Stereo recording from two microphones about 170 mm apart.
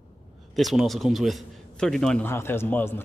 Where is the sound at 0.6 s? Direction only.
Centre (ahead or behind).